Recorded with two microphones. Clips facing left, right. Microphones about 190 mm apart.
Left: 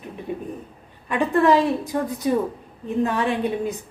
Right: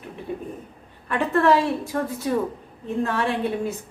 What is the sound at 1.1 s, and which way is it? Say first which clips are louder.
A woman's voice: left 1 dB; 15° left (ahead or behind).